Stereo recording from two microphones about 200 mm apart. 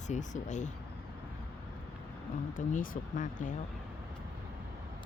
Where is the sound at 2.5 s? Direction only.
40° left (ahead or behind).